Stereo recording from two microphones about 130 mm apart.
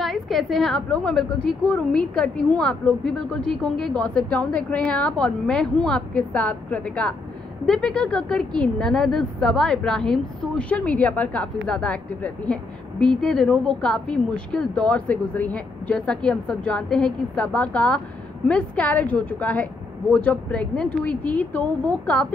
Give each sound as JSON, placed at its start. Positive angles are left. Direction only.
{"t": 0.0, "sound": "a woman's voice", "side_deg": 0}